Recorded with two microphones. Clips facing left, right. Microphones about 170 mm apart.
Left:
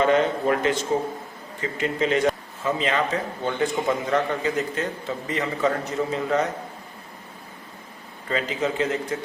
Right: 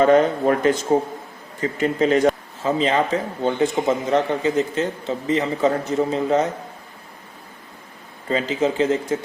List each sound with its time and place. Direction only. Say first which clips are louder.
0.0 s speech: right 5 dB; 40° right (ahead or behind)
1.8 s a man's voice: right 5 dB; 40° right (ahead or behind)
8.3 s a man's voice: right 5 dB; 30° right (ahead or behind)